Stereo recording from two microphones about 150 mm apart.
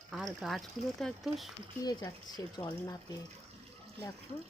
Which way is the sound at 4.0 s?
90° right.